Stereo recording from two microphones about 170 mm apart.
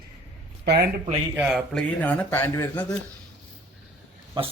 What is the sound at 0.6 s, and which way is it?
Speech, 75° right (ahead or behind).